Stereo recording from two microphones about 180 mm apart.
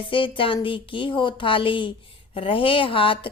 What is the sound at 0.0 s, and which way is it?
A woman's voice, 30° left (ahead or behind).